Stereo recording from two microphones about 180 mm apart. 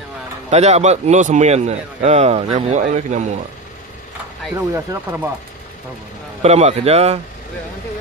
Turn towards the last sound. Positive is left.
turn(degrees=-35)  # may be behind; listen again after turning